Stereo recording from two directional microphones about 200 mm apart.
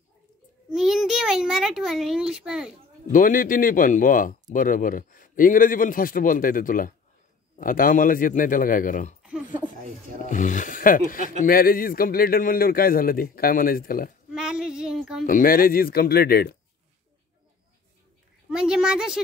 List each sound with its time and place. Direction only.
0.7 s a child's voice: centre (ahead or behind)
3.1 s speech: 45° left (ahead or behind)
10.3 s speech: 40° left (ahead or behind)
14.3 s female singing: 5° right (ahead or behind)
15.2 s speech: 45° left (ahead or behind)
18.5 s a woman's voice: 5° right (ahead or behind)